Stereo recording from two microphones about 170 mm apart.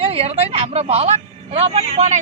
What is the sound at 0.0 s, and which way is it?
A woman's voice, 35° right (ahead or behind).